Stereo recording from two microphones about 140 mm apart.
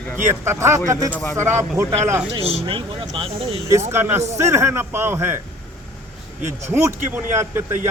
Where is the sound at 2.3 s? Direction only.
45° right (ahead or behind).